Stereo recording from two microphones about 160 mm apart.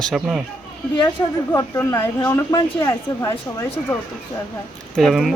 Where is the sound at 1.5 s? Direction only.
15° left (ahead or behind).